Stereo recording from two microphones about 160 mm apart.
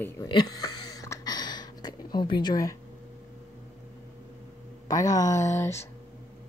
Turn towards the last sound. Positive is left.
turn(degrees=15)  # may be behind; listen again after turning